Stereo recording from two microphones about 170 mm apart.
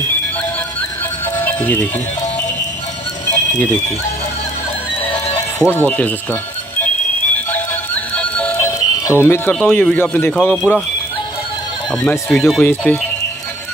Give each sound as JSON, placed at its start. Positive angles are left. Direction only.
{"t": 1.3, "sound": "music", "side_deg": 10}
{"t": 5.0, "sound": "horse", "side_deg": 30}
{"t": 5.6, "sound": "speech", "side_deg": 10}
{"t": 7.5, "sound": "music", "side_deg": 10}
{"t": 9.6, "sound": "speech", "side_deg": 10}
{"t": 11.9, "sound": "speech", "side_deg": 10}